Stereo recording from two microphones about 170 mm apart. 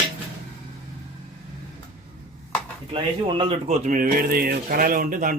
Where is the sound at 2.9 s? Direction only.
30° right (ahead or behind).